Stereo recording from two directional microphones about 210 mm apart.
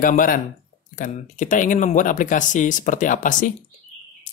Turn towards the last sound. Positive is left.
turn(degrees=35)  # may be behind; listen again after turning